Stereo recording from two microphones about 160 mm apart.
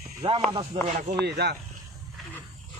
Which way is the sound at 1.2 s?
90° right.